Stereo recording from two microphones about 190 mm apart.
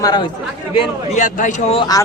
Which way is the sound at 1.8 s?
20° left (ahead or behind).